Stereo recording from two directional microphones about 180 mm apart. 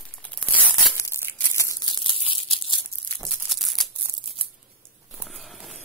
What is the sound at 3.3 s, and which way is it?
Crumpling, centre (ahead or behind).